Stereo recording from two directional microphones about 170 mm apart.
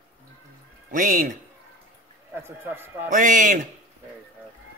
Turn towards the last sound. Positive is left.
turn(degrees=-50)  # may be behind; listen again after turning